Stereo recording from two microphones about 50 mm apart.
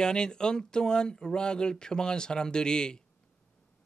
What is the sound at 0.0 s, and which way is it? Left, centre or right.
Speech, centre.